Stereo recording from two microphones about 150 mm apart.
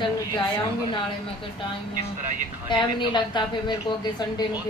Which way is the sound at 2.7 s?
30° left (ahead or behind).